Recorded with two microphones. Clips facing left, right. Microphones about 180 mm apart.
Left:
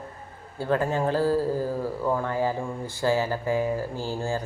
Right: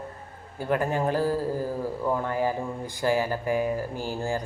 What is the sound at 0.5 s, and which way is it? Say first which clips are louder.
Speech: left 1 dB; 15° right (ahead or behind).